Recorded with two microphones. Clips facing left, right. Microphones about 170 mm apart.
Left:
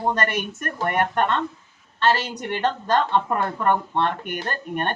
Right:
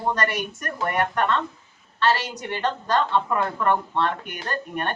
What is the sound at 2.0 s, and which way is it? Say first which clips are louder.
Speech: left 1 dB; 50° left (ahead or behind).